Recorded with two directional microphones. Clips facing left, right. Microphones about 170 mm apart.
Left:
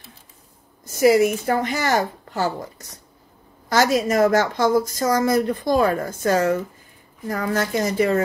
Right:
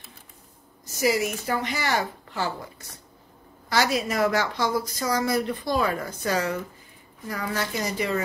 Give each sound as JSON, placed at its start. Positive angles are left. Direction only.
{"t": 0.9, "sound": "a woman's voice", "side_deg": 55}
{"t": 3.6, "sound": "a woman's voice", "side_deg": 45}